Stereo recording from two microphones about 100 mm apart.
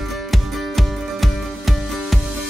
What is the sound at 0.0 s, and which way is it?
Music, centre (ahead or behind).